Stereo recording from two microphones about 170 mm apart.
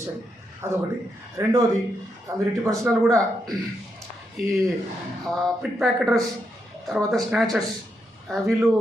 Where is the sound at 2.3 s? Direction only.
20° right (ahead or behind).